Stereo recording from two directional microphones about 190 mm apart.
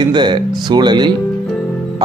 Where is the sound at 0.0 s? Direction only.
25° right (ahead or behind).